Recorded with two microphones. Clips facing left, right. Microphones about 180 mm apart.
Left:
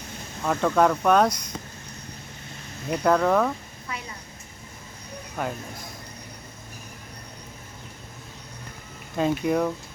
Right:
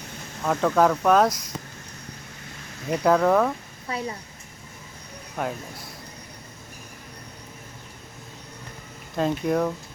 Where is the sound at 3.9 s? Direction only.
35° right (ahead or behind).